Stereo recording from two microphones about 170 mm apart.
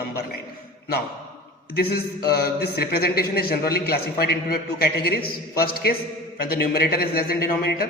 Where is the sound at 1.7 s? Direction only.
70° left (ahead or behind).